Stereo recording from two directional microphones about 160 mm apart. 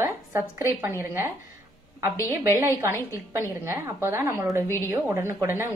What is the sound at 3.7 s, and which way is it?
Speech, 15° right (ahead or behind).